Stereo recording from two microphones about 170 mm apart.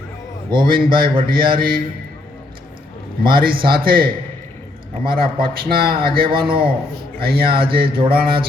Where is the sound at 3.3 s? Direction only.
60° right (ahead or behind).